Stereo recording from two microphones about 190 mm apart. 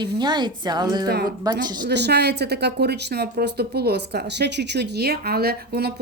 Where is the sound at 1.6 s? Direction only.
20° right (ahead or behind).